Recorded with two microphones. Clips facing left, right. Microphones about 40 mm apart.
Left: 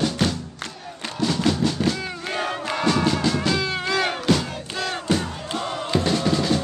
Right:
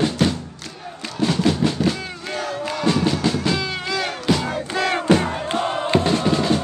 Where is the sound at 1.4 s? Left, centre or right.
Centre.